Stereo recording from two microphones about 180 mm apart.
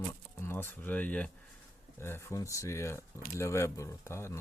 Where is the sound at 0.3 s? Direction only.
15° left (ahead or behind).